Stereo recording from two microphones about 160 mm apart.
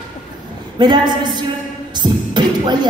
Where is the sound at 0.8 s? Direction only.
25° right (ahead or behind).